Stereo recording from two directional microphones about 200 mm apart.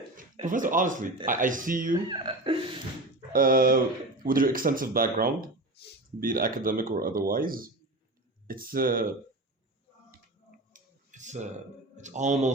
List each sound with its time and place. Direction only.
0.2 s speech: 40° right (ahead or behind)
2.0 s speech: 25° right (ahead or behind)
3.3 s speech: 45° right (ahead or behind)
10.7 s clicking: 40° right (ahead or behind)
11.9 s speech: 35° right (ahead or behind)